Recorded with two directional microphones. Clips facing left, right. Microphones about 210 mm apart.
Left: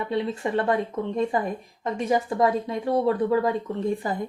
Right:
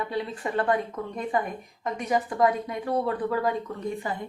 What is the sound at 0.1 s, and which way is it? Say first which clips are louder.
Speech: left 4 dB; 25° left (ahead or behind).